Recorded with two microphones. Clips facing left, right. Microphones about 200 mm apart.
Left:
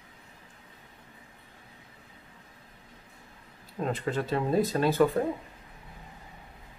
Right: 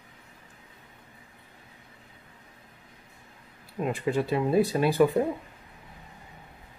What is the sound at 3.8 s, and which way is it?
Speech, 10° right (ahead or behind).